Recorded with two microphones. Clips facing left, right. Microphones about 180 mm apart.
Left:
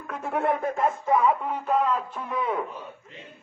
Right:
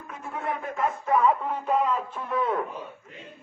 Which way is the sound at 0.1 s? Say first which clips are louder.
Left 7 dB; 75° left (ahead or behind).